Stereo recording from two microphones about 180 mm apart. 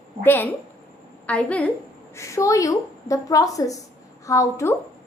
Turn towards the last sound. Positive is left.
turn(degrees=15)  # may be behind; listen again after turning